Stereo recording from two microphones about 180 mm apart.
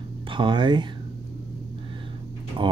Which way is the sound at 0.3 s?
25° right (ahead or behind).